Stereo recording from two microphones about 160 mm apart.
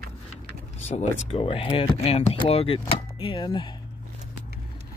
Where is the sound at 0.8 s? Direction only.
40° left (ahead or behind).